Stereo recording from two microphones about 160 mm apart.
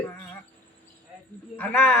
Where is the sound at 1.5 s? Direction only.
10° left (ahead or behind).